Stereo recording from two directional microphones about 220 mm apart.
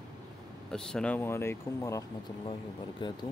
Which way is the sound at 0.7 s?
5° left (ahead or behind).